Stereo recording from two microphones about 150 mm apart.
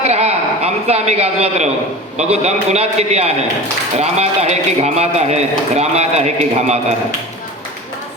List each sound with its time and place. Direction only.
0.0 s a man's voice: 45° right (ahead or behind)